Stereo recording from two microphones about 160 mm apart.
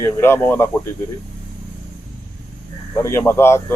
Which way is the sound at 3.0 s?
15° left (ahead or behind).